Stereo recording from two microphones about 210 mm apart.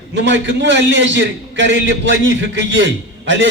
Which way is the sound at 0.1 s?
60° right (ahead or behind).